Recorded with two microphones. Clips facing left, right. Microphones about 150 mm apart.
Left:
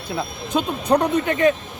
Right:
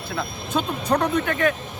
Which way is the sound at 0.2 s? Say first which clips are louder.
Left 2 dB; 15° left (ahead or behind).